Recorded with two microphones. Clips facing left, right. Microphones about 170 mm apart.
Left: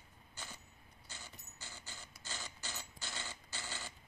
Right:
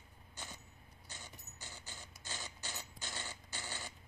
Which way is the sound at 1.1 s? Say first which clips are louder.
Right 1 dB; 15° right (ahead or behind).